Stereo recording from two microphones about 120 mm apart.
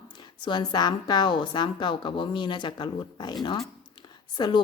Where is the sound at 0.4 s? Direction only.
40° left (ahead or behind).